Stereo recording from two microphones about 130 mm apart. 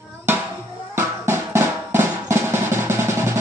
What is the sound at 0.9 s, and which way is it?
Drum, 20° right (ahead or behind).